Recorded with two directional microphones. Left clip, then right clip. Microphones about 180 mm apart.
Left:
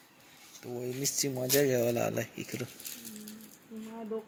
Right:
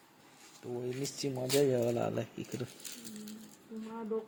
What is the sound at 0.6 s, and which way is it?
Speech, 25° left (ahead or behind).